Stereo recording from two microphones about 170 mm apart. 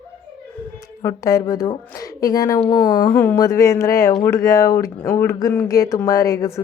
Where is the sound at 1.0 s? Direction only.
20° left (ahead or behind).